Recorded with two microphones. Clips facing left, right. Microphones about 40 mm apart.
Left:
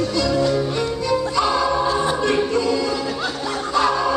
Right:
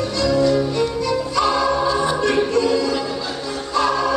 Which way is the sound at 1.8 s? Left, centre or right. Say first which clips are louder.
Right 1 dB; left.